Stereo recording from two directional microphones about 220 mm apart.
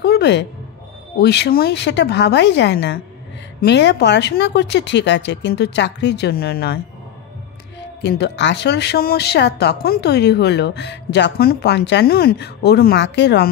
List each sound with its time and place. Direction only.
0.0 s a sound: 50° left (ahead or behind)
1.1 s speech: 50° left (ahead or behind)
8.0 s speech: 50° left (ahead or behind)